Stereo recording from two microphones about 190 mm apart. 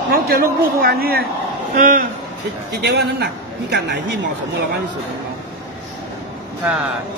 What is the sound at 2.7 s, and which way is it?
A man's voice, 60° right (ahead or behind).